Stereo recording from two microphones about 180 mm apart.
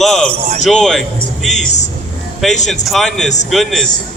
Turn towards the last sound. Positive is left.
turn(degrees=0)  # may be behind; listen again after turning